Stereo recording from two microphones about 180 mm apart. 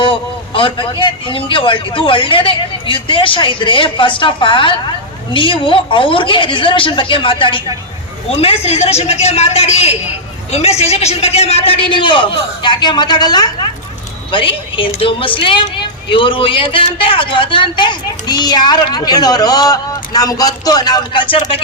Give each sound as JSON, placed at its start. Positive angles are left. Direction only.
{"t": 0.0, "sound": "a man's voice", "side_deg": 30}